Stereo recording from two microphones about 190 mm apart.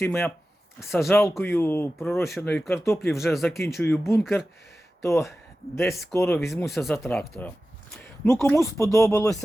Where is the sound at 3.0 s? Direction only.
Centre (ahead or behind).